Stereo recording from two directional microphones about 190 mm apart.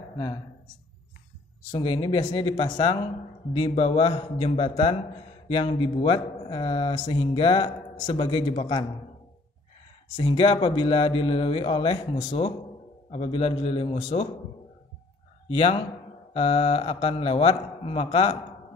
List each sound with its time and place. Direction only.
1.7 s speech: 25° left (ahead or behind)
10.1 s speech: 30° left (ahead or behind)
15.4 s a man's voice: 30° left (ahead or behind)